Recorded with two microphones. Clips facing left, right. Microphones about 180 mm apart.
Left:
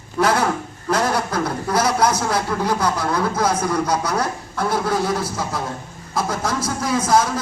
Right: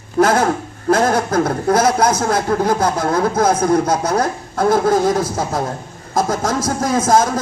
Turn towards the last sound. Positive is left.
turn(degrees=-45)  # may be behind; listen again after turning